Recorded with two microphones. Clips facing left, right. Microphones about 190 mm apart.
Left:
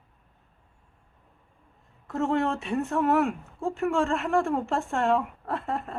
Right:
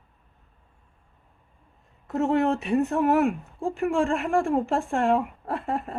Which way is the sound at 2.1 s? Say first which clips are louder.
Right 3 dB; 20° right (ahead or behind).